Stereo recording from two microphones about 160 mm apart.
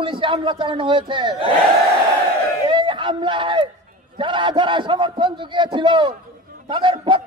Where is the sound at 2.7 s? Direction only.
30° right (ahead or behind).